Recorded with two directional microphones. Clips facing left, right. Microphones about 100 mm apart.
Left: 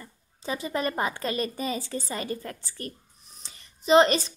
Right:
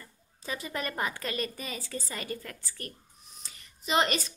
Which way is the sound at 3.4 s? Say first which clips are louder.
Left 2 dB; 30° left (ahead or behind).